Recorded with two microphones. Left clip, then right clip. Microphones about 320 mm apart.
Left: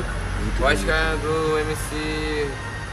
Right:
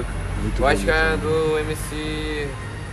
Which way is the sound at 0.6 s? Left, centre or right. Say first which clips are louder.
Right 1 dB; centre.